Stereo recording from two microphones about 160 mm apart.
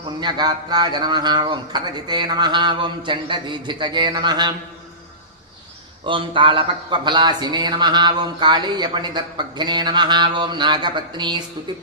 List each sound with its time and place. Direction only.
0.2 s speech: 25° right (ahead or behind)
6.1 s speech: 30° right (ahead or behind)